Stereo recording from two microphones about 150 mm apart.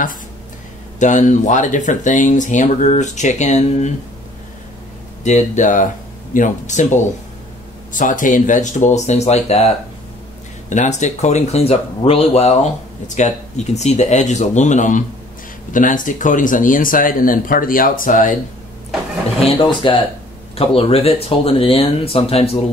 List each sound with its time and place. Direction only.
0.9 s speech: 55° left (ahead or behind)
5.2 s speech: 55° left (ahead or behind)
10.7 s speech: 50° left (ahead or behind)
19.4 s speech: 35° left (ahead or behind)